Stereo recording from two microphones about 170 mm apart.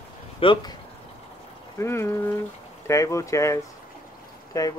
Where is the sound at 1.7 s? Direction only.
15° left (ahead or behind).